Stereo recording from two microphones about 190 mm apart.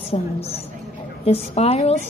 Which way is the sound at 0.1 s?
35° left (ahead or behind).